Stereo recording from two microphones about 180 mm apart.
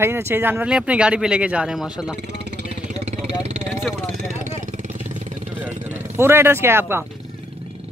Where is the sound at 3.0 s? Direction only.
40° right (ahead or behind).